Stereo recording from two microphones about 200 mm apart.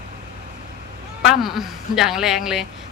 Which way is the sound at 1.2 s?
Centre (ahead or behind).